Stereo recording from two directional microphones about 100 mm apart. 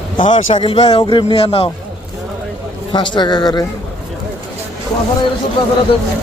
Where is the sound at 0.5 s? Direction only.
70° left (ahead or behind).